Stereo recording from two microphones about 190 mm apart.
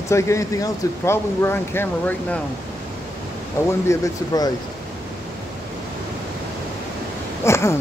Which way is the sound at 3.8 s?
15° left (ahead or behind).